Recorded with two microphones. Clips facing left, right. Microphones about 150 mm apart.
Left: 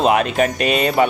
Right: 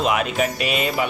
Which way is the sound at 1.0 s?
50° left (ahead or behind).